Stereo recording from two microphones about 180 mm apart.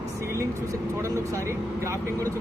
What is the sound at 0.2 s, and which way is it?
Speech, 15° right (ahead or behind).